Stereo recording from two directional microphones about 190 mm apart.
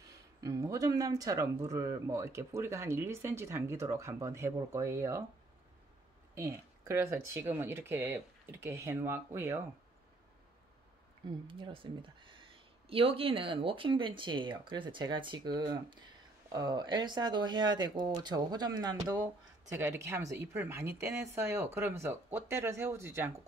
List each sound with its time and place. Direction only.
0.4 s speech: 15° right (ahead or behind)
6.3 s speech: 15° right (ahead or behind)
11.4 s speech: 25° right (ahead or behind)